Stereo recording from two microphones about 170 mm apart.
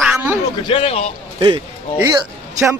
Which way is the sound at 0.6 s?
30° left (ahead or behind).